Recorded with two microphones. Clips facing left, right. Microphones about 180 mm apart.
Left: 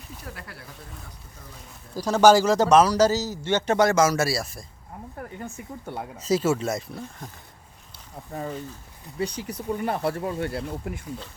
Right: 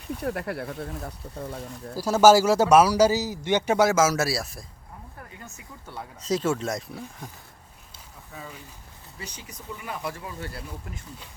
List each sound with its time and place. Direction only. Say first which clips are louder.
0.2 s speech: right 14 dB; 60° right (ahead or behind)
2.0 s a man's voice: even; 5° right (ahead or behind)
5.5 s speech: left 8 dB; 55° left (ahead or behind)
6.1 s speech: left 2 dB; 5° left (ahead or behind)
8.3 s speech: left 10 dB; 55° left (ahead or behind)